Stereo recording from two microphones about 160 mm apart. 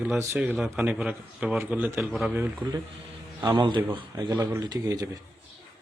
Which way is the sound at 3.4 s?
30° right (ahead or behind).